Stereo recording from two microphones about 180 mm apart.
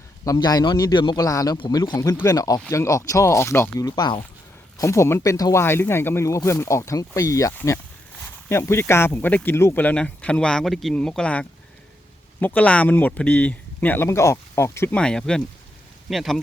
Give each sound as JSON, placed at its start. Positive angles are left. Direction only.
{"t": 0.3, "sound": "a man's voice", "side_deg": 20}